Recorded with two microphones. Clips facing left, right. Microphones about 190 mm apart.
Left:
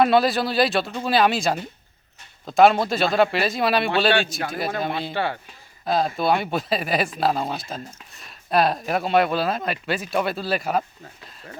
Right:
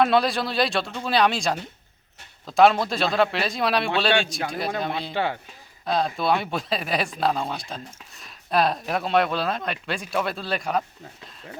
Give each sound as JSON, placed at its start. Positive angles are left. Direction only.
{"t": 0.0, "sound": "speech", "side_deg": 0}
{"t": 5.1, "sound": "speech", "side_deg": -15}
{"t": 5.8, "sound": "speech", "side_deg": 5}